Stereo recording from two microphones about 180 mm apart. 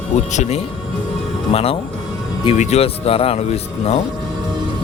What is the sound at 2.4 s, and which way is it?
Speech, 35° left (ahead or behind).